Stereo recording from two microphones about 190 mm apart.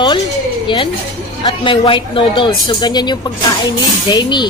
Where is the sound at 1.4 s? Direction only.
25° left (ahead or behind).